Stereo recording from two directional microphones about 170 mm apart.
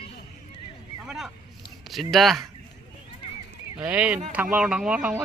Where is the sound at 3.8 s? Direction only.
10° right (ahead or behind).